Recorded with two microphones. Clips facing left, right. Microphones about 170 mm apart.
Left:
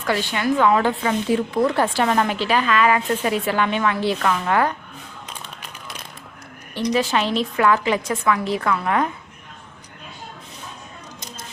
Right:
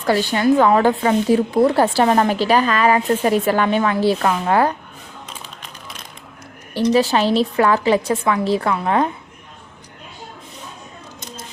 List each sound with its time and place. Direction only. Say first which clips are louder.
0.0 s speech: right 5 dB; 40° right (ahead or behind)
6.7 s speech: right 5 dB; 35° right (ahead or behind)